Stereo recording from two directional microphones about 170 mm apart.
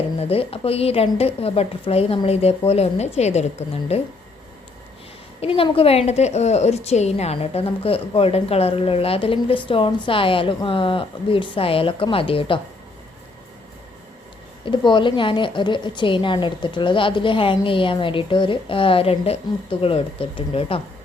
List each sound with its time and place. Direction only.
0.2 s a woman's voice: 35° left (ahead or behind)
5.4 s a woman's voice: 35° left (ahead or behind)
14.6 s a woman's voice: 30° left (ahead or behind)